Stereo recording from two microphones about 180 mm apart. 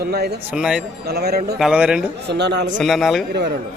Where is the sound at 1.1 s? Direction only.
60° right (ahead or behind).